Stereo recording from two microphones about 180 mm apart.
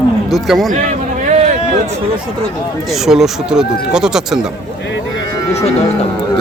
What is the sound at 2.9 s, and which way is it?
Speech, centre (ahead or behind).